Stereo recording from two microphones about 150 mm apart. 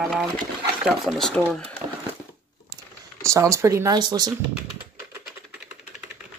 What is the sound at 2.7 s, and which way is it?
Speech, 20° right (ahead or behind).